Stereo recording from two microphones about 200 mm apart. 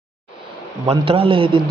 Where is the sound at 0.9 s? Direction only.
25° right (ahead or behind).